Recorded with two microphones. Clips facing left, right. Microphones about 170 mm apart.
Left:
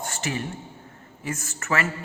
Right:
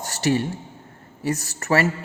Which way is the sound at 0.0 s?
35° right (ahead or behind).